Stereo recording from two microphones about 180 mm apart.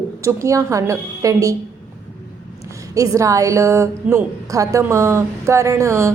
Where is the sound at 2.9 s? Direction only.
20° right (ahead or behind).